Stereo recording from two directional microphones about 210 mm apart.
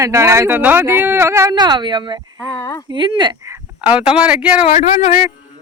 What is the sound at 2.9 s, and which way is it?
Speech, 20° right (ahead or behind).